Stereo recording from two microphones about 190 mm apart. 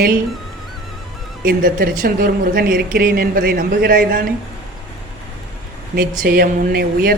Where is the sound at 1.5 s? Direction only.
50° right (ahead or behind).